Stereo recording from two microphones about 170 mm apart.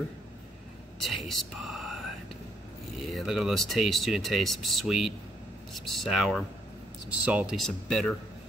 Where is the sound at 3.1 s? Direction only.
Centre (ahead or behind).